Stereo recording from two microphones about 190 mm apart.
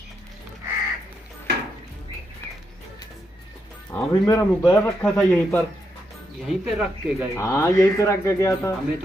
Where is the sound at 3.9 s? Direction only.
15° left (ahead or behind); by 7.3 s 5° right (ahead or behind).